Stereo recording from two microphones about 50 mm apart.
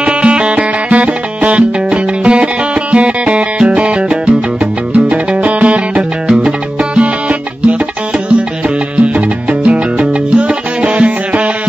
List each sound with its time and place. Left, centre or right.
0.0 s music: right